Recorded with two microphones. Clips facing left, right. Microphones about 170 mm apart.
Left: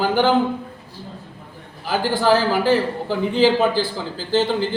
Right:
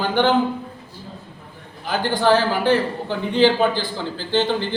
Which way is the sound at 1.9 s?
5° left (ahead or behind).